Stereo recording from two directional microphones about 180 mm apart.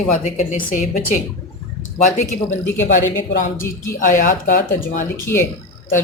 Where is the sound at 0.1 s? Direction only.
45° left (ahead or behind).